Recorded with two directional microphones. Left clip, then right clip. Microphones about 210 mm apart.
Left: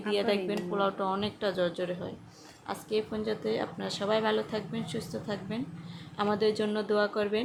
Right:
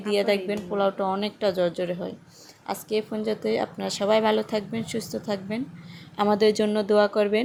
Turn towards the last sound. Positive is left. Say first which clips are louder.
# right 8 dB
turn(degrees=-30)  # may be behind; listen again after turning